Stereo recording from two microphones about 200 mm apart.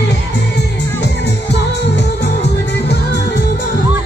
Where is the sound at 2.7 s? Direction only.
60° left (ahead or behind).